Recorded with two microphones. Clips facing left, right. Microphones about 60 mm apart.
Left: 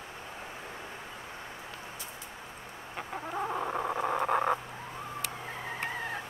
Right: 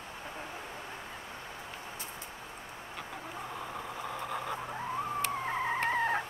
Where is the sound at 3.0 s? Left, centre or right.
Left.